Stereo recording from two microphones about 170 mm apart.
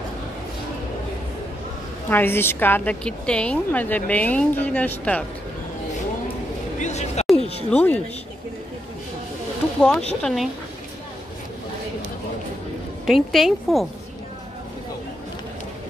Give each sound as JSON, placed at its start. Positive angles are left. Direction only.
{"t": 2.0, "sound": "a woman's voice", "side_deg": 10}
{"t": 6.8, "sound": "speech", "side_deg": 40}
{"t": 7.3, "sound": "a sound", "side_deg": 35}
{"t": 7.7, "sound": "a woman's voice", "side_deg": 10}
{"t": 9.8, "sound": "a woman's voice", "side_deg": 5}
{"t": 13.0, "sound": "a woman's voice", "side_deg": 0}